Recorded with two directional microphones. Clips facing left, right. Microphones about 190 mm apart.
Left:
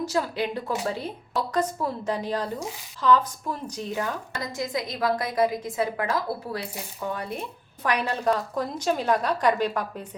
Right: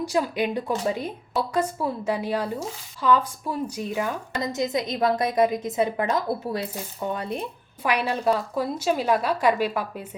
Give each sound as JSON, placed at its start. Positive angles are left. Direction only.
{"t": 0.0, "sound": "a woman's voice", "side_deg": -15}
{"t": 4.4, "sound": "a woman's voice", "side_deg": -20}
{"t": 7.9, "sound": "a woman's voice", "side_deg": -10}